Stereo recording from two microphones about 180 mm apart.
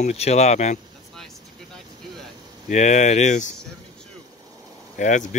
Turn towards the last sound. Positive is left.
turn(degrees=45)  # may be behind; listen again after turning